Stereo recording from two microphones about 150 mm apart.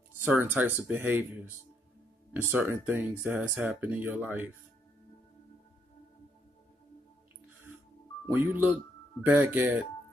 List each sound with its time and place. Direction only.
0.2 s speech: 15° right (ahead or behind)
2.5 s speech: 15° right (ahead or behind)
8.3 s speech: 10° right (ahead or behind)